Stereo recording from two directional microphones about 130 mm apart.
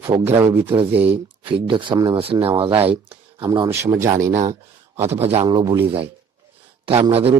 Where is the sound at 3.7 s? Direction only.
20° right (ahead or behind).